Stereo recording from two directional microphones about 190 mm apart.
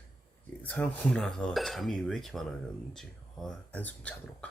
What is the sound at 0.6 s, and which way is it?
Speech, 5° left (ahead or behind).